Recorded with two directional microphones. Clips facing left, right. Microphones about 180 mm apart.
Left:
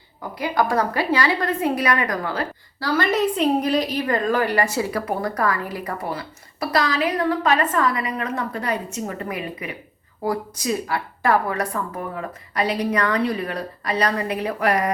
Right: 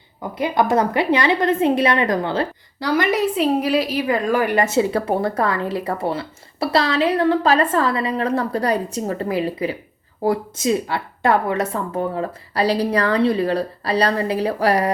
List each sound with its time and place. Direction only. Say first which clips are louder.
0.2 s a woman's voice: right 3 dB; 20° right (ahead or behind)